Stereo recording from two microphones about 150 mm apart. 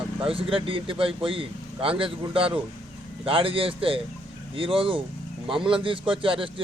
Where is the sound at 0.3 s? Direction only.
35° right (ahead or behind).